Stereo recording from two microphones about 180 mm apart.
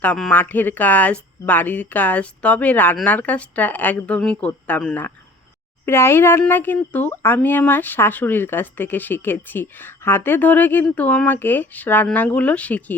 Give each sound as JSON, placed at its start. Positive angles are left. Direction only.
{"t": 0.0, "sound": "speech", "side_deg": 5}